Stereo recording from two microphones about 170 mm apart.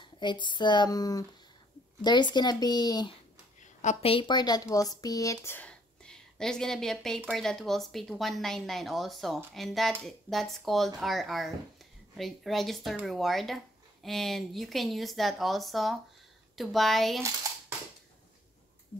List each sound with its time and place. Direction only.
0.0 s speech: 25° left (ahead or behind)
3.8 s speech: 35° left (ahead or behind); by 17.2 s centre (ahead or behind)
17.2 s a sound: 15° right (ahead or behind)